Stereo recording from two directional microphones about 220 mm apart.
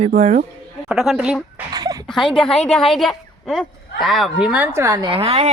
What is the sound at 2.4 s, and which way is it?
A woman's voice, 5° left (ahead or behind).